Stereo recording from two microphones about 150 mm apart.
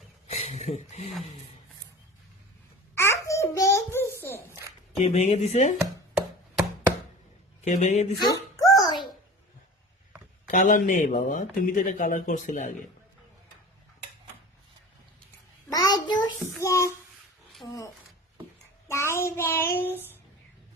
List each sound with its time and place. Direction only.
0.3 s a sound: 45° left (ahead or behind)
0.7 s speech: 50° left (ahead or behind)
2.9 s babbling: 20° left (ahead or behind)
4.9 s speech: 45° left (ahead or behind)
7.6 s speech: 50° left (ahead or behind)
8.2 s a sound: 25° left (ahead or behind)
10.5 s speech: 60° left (ahead or behind)
15.7 s child singing: 25° left (ahead or behind)
16.6 s child singing: 20° left (ahead or behind)
17.7 s speech: 20° left (ahead or behind)
18.9 s child singing: 20° left (ahead or behind)